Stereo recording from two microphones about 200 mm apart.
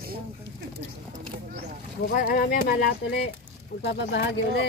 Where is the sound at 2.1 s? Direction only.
50° left (ahead or behind).